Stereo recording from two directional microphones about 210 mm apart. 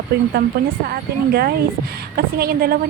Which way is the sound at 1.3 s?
50° right (ahead or behind).